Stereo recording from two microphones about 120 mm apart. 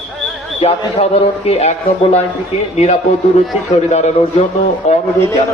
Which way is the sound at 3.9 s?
65° left (ahead or behind).